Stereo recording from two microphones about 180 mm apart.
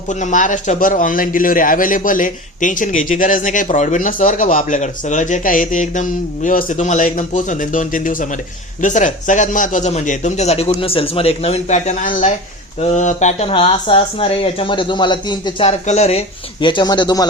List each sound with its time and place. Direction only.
0.1 s a man's voice: 45° left (ahead or behind)
13.5 s speech: 30° left (ahead or behind)
15.9 s speech: 40° left (ahead or behind)